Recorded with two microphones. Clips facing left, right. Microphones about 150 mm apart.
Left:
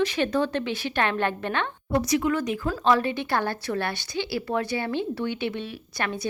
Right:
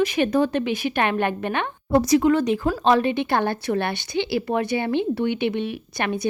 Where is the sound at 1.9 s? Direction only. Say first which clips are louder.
Right 7 dB; 35° right (ahead or behind); by 6.2 s 20° right (ahead or behind).